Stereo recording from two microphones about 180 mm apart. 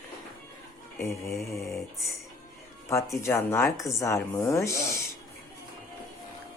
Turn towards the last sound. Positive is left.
turn(degrees=15)  # may be behind; listen again after turning